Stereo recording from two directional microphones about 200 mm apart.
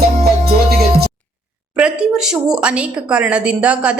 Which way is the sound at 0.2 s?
50° right (ahead or behind).